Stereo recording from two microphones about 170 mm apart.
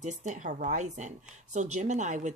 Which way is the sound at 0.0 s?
45° right (ahead or behind).